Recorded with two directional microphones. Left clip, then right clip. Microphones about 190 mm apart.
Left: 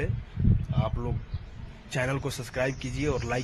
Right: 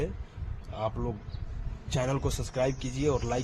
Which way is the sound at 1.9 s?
5° right (ahead or behind).